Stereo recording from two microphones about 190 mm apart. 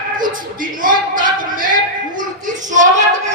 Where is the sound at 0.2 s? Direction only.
45° right (ahead or behind).